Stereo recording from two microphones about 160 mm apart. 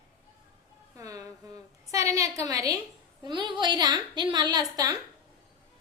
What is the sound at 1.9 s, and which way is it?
A woman's voice, 20° right (ahead or behind).